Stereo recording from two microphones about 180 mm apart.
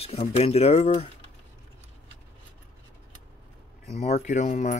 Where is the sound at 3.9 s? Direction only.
40° left (ahead or behind).